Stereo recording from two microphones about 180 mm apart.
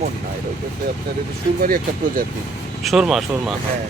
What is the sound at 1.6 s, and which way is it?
Speech, 50° right (ahead or behind).